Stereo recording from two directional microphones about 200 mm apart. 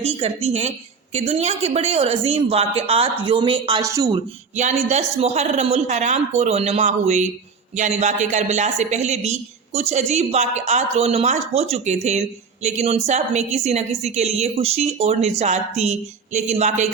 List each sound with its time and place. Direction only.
0.0 s a woman's voice: 30° right (ahead or behind)
4.5 s a woman's voice: 35° right (ahead or behind)